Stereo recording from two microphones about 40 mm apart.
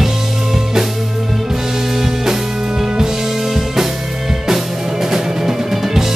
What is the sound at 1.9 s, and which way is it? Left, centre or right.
Music, centre.